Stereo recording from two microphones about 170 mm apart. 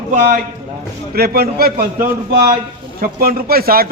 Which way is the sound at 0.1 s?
55° right (ahead or behind).